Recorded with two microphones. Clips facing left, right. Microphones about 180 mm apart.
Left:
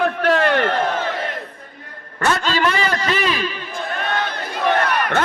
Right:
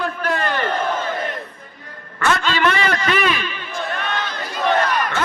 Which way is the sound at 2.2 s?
40° left (ahead or behind).